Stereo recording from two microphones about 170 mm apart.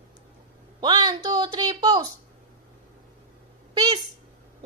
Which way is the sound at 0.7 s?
25° right (ahead or behind).